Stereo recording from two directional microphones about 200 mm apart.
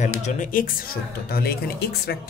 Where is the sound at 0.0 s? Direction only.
40° left (ahead or behind).